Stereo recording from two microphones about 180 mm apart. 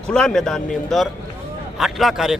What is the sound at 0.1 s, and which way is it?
Speech, 5° left (ahead or behind).